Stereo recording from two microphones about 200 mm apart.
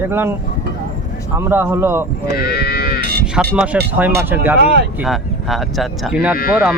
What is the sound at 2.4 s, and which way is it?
Livestock, 50° left (ahead or behind).